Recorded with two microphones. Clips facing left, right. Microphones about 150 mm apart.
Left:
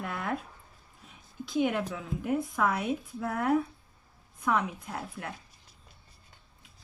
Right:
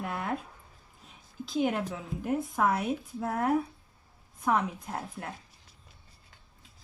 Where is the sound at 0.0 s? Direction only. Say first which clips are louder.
Right 1 dB; 20° right (ahead or behind).